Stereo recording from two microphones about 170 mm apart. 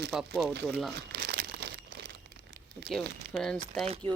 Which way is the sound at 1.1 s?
65° right (ahead or behind).